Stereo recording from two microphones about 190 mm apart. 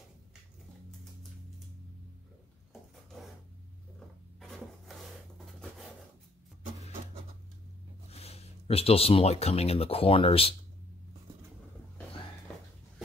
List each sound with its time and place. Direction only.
4.4 s rub: centre (ahead or behind)
8.1 s speech: 35° left (ahead or behind)